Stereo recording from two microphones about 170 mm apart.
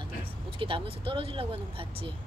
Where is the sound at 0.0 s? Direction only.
30° right (ahead or behind).